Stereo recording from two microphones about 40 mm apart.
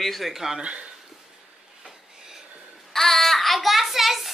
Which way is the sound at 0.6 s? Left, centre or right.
Right.